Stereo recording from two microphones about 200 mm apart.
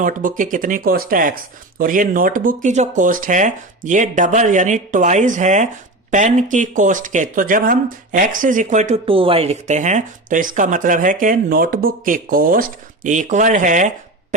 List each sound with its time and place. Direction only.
0.0 s speech: 40° right (ahead or behind)